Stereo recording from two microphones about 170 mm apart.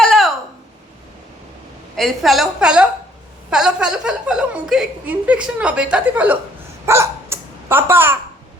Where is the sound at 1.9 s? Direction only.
Centre (ahead or behind).